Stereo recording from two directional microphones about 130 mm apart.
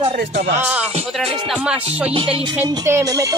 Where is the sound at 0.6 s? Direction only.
10° right (ahead or behind).